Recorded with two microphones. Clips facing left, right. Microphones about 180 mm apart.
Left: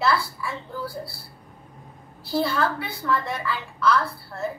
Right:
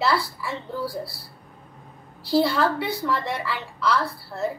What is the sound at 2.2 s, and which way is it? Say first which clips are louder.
A woman's voice: right 3 dB; 15° right (ahead or behind).